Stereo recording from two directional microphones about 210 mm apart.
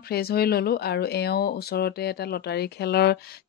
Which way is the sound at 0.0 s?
45° left (ahead or behind).